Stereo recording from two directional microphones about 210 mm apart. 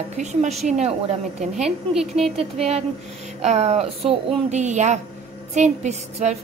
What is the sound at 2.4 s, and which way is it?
A woman's voice, 30° right (ahead or behind).